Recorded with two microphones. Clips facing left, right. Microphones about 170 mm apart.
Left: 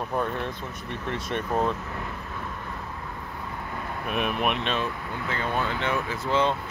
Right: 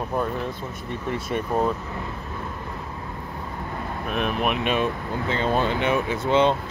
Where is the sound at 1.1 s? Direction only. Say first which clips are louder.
Right 3 dB; 10° right (ahead or behind).